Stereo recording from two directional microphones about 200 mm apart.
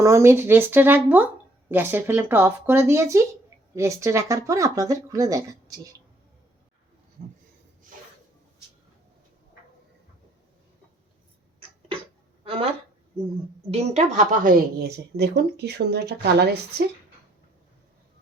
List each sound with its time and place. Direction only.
0.0 s speech: 15° right (ahead or behind)
13.7 s a woman's voice: 30° right (ahead or behind); by 16.8 s 55° right (ahead or behind)